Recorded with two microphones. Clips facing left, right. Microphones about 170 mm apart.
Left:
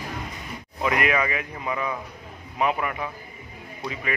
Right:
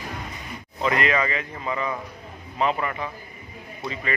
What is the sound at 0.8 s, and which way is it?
A man's voice, 10° left (ahead or behind).